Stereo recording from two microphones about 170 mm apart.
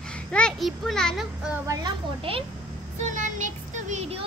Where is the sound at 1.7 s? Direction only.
25° right (ahead or behind).